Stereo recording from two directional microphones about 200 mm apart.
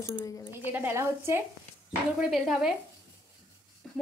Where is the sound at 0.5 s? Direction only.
10° right (ahead or behind).